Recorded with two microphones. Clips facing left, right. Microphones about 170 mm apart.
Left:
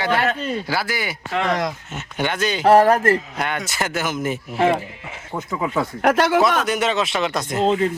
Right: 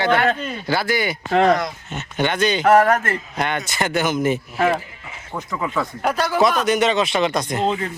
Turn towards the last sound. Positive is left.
turn(degrees=5)  # may be behind; listen again after turning